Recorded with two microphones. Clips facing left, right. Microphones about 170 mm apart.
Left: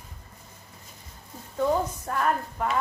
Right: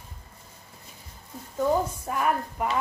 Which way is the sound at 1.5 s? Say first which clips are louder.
Even; 10° right (ahead or behind).